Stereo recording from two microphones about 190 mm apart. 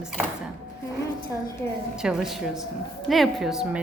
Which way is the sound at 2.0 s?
5° right (ahead or behind).